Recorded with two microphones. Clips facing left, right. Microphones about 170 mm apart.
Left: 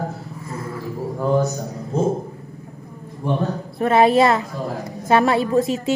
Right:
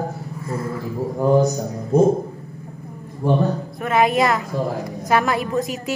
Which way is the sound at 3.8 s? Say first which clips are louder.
Left 4 dB; 30° left (ahead or behind).